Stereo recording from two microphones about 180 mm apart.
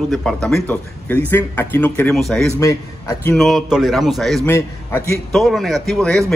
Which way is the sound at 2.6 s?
15° left (ahead or behind).